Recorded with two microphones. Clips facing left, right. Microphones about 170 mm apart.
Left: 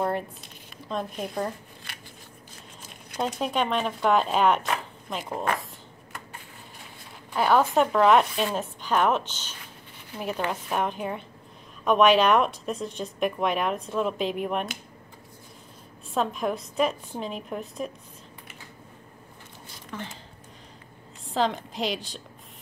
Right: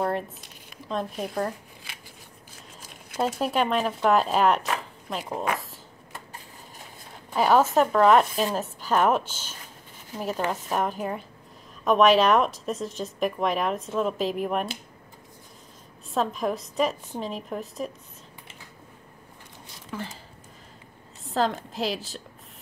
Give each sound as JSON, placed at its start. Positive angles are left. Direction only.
{"t": 0.8, "sound": "speech", "side_deg": 0}
{"t": 3.1, "sound": "a woman's voice", "side_deg": -5}
{"t": 7.3, "sound": "a woman's voice", "side_deg": -5}
{"t": 16.1, "sound": "a woman's voice", "side_deg": 0}
{"t": 19.9, "sound": "a woman's voice", "side_deg": -5}
{"t": 21.2, "sound": "a woman's voice", "side_deg": 0}